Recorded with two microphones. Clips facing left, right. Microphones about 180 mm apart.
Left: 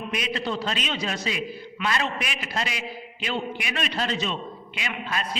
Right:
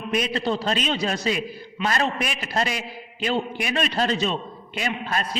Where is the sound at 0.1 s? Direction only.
40° right (ahead or behind).